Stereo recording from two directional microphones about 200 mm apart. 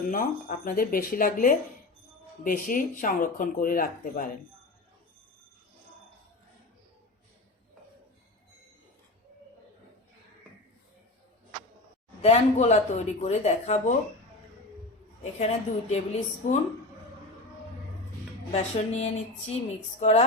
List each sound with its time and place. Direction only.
0.1 s speech: 45° left (ahead or behind)
12.2 s speech: 35° left (ahead or behind)
15.2 s speech: 35° left (ahead or behind)
18.5 s speech: 35° left (ahead or behind)